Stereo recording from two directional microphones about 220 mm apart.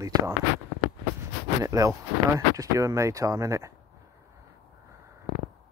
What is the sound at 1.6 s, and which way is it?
Speech, 15° right (ahead or behind).